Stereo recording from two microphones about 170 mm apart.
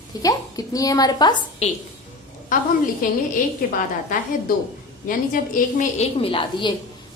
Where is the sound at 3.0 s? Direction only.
55° left (ahead or behind).